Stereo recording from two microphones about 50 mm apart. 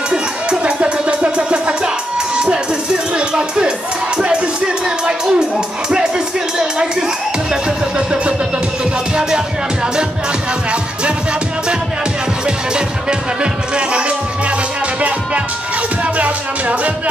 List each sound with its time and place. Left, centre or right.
0.1 s music: centre
3.2 s music: centre
13.4 s music: right